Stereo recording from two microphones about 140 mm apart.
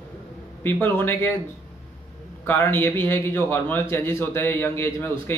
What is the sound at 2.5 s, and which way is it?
A man's voice, 15° left (ahead or behind).